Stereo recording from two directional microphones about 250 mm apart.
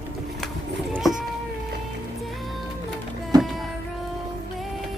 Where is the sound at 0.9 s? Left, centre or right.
Centre.